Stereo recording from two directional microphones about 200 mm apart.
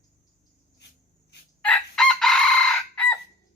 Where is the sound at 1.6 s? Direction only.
5° left (ahead or behind).